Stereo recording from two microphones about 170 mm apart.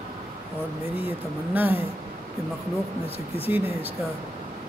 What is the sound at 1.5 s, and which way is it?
Speech, 10° right (ahead or behind).